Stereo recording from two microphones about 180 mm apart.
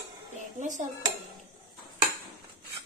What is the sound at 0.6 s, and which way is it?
Speech, 45° right (ahead or behind).